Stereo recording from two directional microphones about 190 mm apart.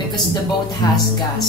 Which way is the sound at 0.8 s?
20° left (ahead or behind).